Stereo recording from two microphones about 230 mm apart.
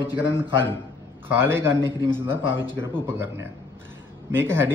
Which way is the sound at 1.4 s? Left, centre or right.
Centre.